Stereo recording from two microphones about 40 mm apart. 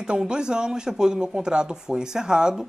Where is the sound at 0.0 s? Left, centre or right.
Right.